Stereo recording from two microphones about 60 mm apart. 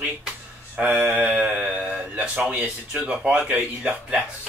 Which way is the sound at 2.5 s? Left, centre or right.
Right.